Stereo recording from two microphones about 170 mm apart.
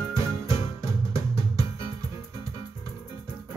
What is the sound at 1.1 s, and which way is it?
Music, 15° right (ahead or behind).